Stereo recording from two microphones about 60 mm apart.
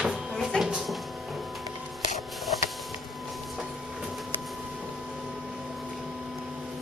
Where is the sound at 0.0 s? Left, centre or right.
Centre.